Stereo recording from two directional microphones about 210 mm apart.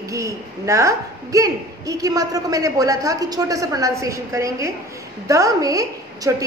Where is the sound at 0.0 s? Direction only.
15° right (ahead or behind).